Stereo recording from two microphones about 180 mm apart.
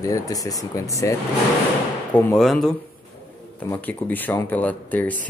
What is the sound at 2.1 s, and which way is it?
Speech, 5° left (ahead or behind).